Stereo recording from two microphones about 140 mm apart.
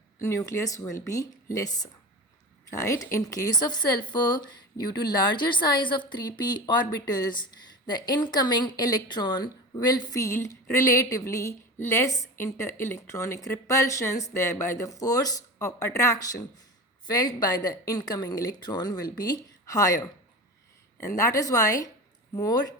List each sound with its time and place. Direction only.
0.3 s a woman's voice: 20° left (ahead or behind)
7.9 s a woman's voice: 30° left (ahead or behind)
21.2 s a woman's voice: 25° left (ahead or behind)